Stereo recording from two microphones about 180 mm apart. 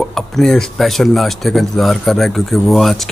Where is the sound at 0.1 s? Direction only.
Centre (ahead or behind).